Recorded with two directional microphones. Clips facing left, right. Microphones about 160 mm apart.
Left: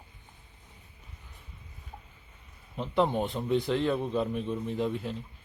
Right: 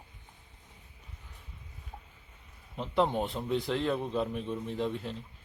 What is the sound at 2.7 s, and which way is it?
A man's voice, centre (ahead or behind).